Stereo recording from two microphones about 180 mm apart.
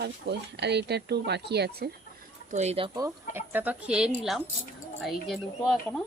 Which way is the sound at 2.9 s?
15° right (ahead or behind).